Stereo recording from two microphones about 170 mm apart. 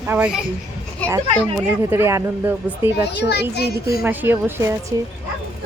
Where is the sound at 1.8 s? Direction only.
15° right (ahead or behind).